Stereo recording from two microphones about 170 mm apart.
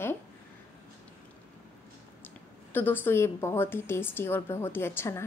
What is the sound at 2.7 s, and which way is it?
A woman's voice, 10° left (ahead or behind).